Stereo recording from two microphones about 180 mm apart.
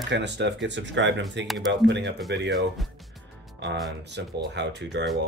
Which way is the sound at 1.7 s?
75° right (ahead or behind).